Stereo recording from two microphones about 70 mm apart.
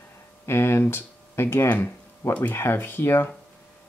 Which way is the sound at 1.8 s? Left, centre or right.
Left.